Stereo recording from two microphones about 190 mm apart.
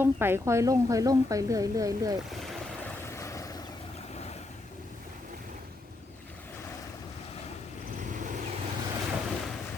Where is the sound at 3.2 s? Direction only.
15° left (ahead or behind).